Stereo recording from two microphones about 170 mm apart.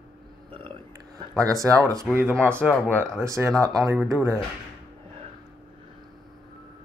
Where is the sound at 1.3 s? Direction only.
20° right (ahead or behind).